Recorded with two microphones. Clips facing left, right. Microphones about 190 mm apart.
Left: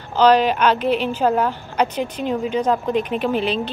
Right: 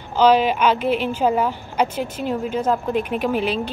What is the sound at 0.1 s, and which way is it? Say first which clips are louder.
A woman's voice: left 1 dB; 10° right (ahead or behind).